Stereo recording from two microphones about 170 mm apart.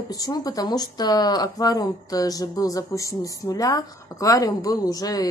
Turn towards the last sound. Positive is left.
turn(degrees=20)  # may be behind; listen again after turning